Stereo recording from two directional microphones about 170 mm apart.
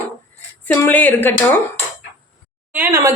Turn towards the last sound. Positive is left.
turn(degrees=-15)  # may be behind; listen again after turning